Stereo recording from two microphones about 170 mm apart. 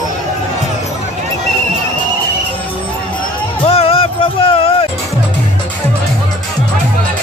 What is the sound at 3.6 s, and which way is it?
Music, 35° left (ahead or behind).